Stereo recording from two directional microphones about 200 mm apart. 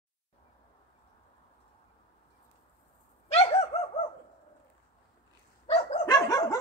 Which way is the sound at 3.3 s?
30° left (ahead or behind).